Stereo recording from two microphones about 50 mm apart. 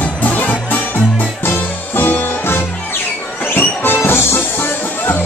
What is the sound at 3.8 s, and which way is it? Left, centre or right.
Music, left.